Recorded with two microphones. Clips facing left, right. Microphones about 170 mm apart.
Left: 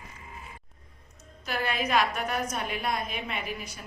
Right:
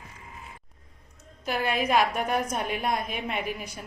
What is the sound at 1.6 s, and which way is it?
A woman's voice, 50° right (ahead or behind).